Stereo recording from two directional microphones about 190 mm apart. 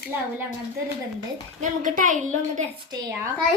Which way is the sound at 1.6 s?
45° right (ahead or behind).